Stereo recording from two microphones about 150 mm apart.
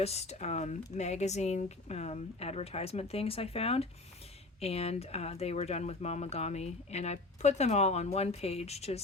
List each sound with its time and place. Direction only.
0.0 s speech: 45° left (ahead or behind)